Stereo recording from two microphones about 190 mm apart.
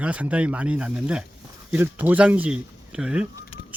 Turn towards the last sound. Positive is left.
turn(degrees=-5)  # may be behind; listen again after turning